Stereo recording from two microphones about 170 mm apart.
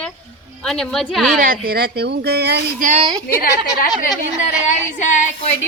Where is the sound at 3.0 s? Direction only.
25° right (ahead or behind).